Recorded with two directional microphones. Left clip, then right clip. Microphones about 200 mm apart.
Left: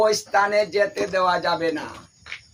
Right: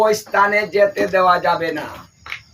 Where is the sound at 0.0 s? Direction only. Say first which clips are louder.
Right 4 dB; 15° left (ahead or behind).